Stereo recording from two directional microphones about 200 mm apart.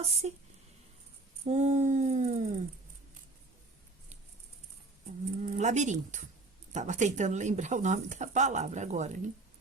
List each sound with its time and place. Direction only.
0.0 s speech: 35° right (ahead or behind)
1.5 s a sound: 35° right (ahead or behind)
5.5 s speech: 35° right (ahead or behind)